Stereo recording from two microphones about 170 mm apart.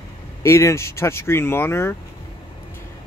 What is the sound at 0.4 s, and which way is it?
Speech, 15° left (ahead or behind).